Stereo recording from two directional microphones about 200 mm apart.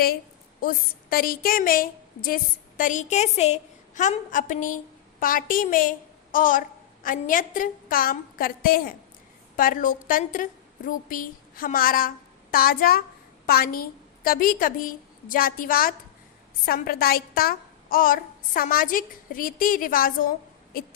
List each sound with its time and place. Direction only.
0.6 s a woman's voice: 45° left (ahead or behind)